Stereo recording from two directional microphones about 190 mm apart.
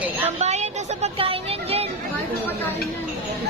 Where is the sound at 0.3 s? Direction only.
35° right (ahead or behind).